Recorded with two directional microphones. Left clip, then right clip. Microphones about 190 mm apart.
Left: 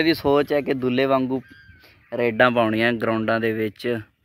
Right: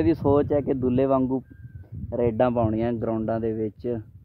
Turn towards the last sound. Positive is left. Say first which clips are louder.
# left 4 dB
turn(degrees=5)  # may be behind; listen again after turning